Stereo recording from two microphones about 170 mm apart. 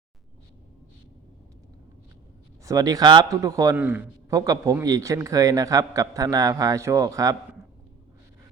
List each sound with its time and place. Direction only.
2.6 s a man's voice: 20° right (ahead or behind)
3.8 s a man's voice: 10° right (ahead or behind)